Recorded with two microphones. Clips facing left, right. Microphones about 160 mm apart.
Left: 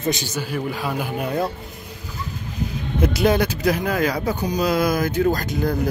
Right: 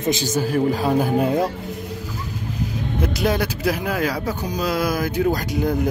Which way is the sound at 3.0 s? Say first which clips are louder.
Left 3 dB; centre (ahead or behind).